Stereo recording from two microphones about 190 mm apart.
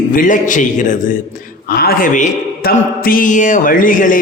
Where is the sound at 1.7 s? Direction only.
55° left (ahead or behind).